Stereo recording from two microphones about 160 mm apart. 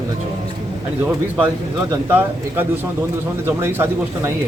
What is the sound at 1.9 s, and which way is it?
A man's voice, 15° right (ahead or behind).